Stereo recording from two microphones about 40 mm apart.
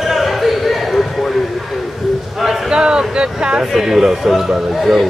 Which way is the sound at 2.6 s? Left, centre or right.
Centre.